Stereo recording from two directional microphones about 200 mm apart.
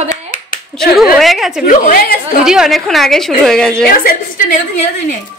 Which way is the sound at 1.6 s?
45° left (ahead or behind).